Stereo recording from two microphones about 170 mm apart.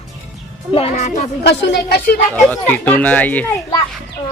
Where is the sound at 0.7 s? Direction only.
40° left (ahead or behind).